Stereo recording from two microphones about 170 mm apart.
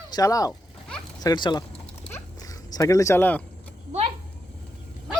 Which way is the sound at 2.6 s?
20° left (ahead or behind).